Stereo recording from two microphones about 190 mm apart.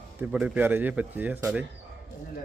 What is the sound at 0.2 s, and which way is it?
A man's voice, 5° right (ahead or behind).